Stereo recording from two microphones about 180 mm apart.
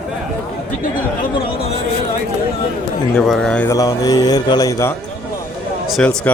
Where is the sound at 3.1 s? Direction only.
Centre (ahead or behind).